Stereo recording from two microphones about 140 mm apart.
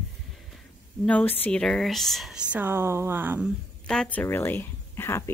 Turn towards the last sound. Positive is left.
turn(degrees=15)  # may be behind; listen again after turning